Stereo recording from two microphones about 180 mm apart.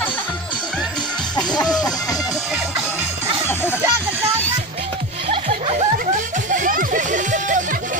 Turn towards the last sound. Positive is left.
turn(degrees=-45)  # may be behind; listen again after turning